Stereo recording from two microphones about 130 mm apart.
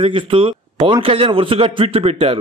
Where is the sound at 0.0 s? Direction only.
40° right (ahead or behind).